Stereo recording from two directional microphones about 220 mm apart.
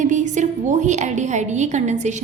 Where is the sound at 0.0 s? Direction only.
35° right (ahead or behind).